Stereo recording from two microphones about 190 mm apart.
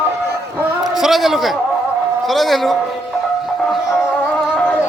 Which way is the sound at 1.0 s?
Centre (ahead or behind).